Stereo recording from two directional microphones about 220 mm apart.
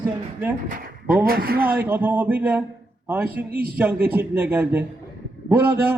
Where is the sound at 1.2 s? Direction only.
45° right (ahead or behind).